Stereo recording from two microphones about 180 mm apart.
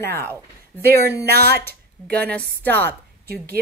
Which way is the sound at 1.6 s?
5° left (ahead or behind).